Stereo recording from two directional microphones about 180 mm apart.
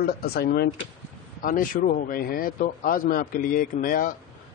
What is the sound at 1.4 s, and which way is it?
A man's voice, 50° left (ahead or behind).